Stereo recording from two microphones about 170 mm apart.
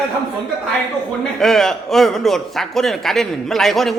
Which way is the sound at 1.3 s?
Centre (ahead or behind).